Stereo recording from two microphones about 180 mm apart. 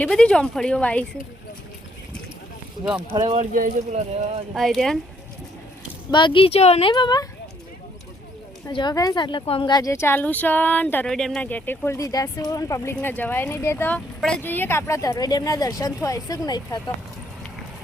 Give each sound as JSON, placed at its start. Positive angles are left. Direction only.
{"t": 0.0, "sound": "a woman's voice", "side_deg": 5}
{"t": 3.1, "sound": "speech", "side_deg": -30}
{"t": 3.5, "sound": "speech", "side_deg": -45}
{"t": 4.5, "sound": "a woman's voice", "side_deg": 0}
{"t": 6.1, "sound": "a woman's voice", "side_deg": 25}
{"t": 8.6, "sound": "speech", "side_deg": 25}